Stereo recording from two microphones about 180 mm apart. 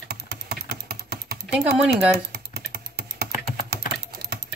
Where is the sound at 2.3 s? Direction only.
65° right (ahead or behind).